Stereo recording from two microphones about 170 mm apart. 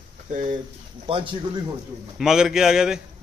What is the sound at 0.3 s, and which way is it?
Speech, 50° right (ahead or behind).